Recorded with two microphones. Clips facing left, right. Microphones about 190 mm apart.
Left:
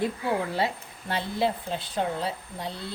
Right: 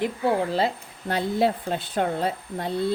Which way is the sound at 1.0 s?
50° right (ahead or behind).